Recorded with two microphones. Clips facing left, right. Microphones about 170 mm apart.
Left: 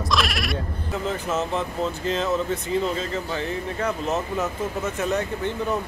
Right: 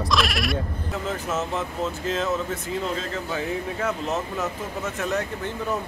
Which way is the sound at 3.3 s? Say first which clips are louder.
Even; 5° right (ahead or behind).